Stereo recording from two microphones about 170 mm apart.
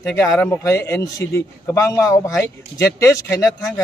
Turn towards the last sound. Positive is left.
turn(degrees=20)  # may be behind; listen again after turning